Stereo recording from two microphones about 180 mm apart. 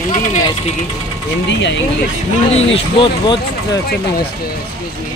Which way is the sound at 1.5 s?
80° left.